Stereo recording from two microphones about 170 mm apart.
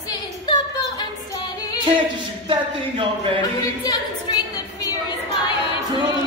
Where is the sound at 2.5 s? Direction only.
30° right (ahead or behind).